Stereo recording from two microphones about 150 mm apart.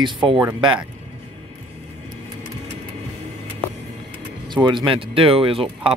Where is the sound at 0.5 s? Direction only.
30° right (ahead or behind).